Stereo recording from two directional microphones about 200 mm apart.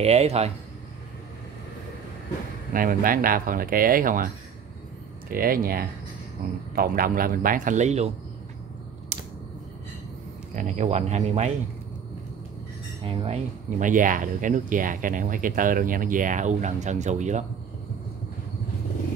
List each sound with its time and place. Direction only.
0.0 s speech: 30° right (ahead or behind)
2.7 s speech: 45° right (ahead or behind)
5.3 s speech: 45° right (ahead or behind)
9.1 s a sound: 35° right (ahead or behind)
10.5 s speech: 35° right (ahead or behind)
13.0 s speech: 25° right (ahead or behind)